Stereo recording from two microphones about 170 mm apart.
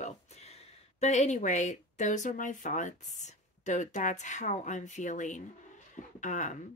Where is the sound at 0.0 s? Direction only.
40° left (ahead or behind).